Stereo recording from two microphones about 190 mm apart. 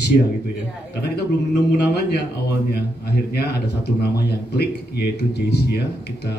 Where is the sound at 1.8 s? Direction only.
60° left (ahead or behind).